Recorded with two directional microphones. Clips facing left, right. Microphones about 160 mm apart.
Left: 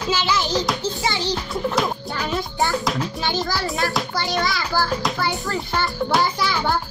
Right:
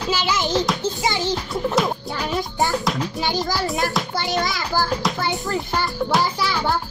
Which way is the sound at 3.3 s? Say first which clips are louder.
Right 2 dB; 15° right (ahead or behind).